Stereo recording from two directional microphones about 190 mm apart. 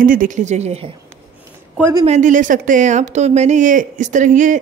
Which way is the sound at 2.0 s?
40° right (ahead or behind).